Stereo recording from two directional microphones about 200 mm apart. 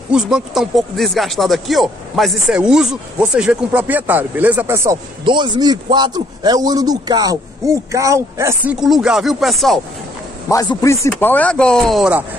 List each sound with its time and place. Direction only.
0.1 s speech: 5° right (ahead or behind)
5.2 s a man's voice: 25° right (ahead or behind)
8.7 s speech: centre (ahead or behind)
10.5 s speech: 15° left (ahead or behind); by 12.3 s 5° right (ahead or behind)